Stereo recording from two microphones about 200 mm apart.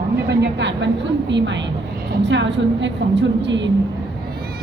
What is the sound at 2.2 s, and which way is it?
A woman's voice, 65° right (ahead or behind).